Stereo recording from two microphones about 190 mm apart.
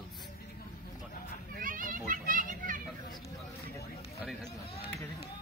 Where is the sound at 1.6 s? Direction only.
45° right (ahead or behind).